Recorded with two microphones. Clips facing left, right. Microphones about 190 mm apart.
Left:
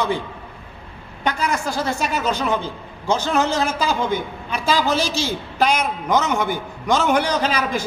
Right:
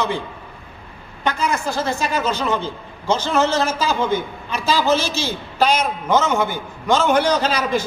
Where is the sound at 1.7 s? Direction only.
10° left (ahead or behind).